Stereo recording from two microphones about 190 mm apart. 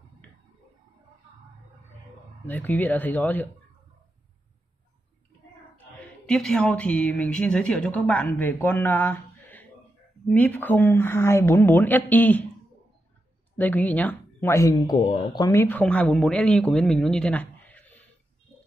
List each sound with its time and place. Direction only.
2.4 s speech: 10° left (ahead or behind)
5.8 s speech: 5° left (ahead or behind)
13.6 s speech: 10° left (ahead or behind)